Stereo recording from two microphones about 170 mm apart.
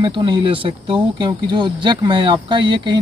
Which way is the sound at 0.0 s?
30° right (ahead or behind).